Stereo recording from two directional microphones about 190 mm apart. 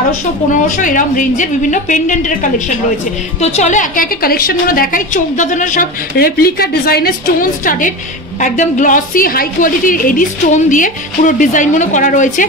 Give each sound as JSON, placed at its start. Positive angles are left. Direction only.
{"t": 0.7, "sound": "a woman's voice", "side_deg": 40}
{"t": 3.3, "sound": "a woman's voice", "side_deg": 35}